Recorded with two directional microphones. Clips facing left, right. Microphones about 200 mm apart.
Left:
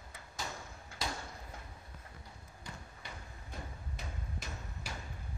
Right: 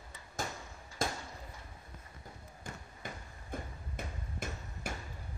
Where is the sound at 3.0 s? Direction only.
50° right (ahead or behind).